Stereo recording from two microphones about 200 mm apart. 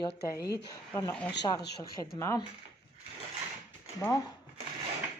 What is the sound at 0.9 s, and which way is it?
Speech, 10° left (ahead or behind).